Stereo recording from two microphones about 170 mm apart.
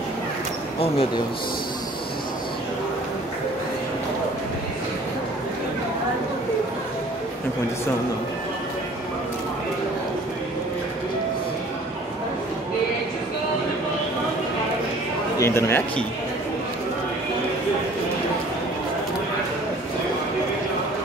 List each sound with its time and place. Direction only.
0.7 s speech: 35° left (ahead or behind)
15.3 s speech: 15° left (ahead or behind)